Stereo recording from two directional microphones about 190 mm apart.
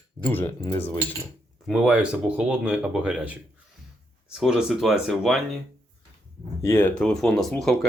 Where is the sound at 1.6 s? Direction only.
5° right (ahead or behind).